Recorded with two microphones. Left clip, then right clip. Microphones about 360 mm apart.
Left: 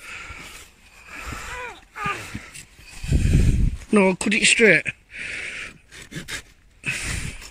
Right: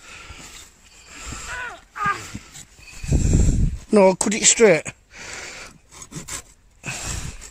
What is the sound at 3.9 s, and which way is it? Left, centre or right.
Speech, centre.